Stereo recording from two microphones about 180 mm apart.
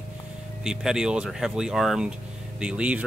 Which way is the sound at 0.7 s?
5° right (ahead or behind).